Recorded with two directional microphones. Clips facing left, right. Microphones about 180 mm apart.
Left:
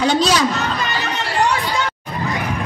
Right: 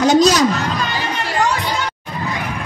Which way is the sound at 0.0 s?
45° right (ahead or behind).